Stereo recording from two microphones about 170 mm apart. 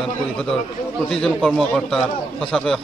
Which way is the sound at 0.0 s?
Centre (ahead or behind).